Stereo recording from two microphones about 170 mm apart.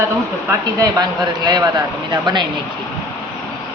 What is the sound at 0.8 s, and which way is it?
Speech, 20° right (ahead or behind).